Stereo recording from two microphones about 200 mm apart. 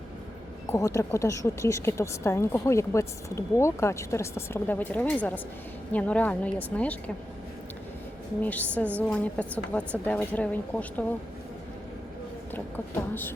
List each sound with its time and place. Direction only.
0.7 s a woman's voice: 15° left (ahead or behind)
8.4 s a woman's voice: 5° left (ahead or behind)
12.5 s a woman's voice: 10° left (ahead or behind)